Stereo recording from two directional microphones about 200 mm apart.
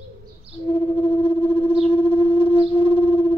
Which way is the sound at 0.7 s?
25° left (ahead or behind).